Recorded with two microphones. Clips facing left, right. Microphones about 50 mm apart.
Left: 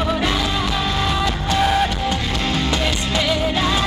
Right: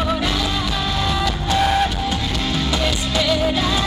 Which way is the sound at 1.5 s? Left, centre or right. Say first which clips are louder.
Even; centre.